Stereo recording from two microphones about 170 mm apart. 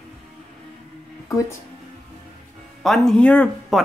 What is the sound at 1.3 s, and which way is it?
Speech, 20° left (ahead or behind).